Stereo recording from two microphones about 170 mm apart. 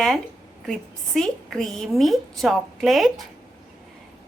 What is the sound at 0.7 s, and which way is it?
A woman's voice, centre (ahead or behind).